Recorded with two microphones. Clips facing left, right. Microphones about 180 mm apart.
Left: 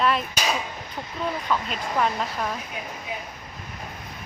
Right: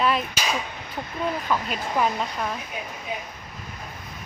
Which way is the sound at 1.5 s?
5° right (ahead or behind).